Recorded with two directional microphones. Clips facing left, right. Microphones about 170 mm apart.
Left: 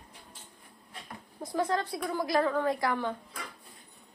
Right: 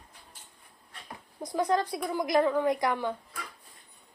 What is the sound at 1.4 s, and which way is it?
A woman's voice, 15° right (ahead or behind).